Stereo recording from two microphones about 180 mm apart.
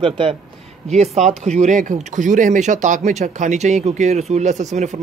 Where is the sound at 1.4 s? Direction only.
40° right (ahead or behind).